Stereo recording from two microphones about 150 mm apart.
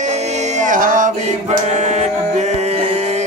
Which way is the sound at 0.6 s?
60° right (ahead or behind).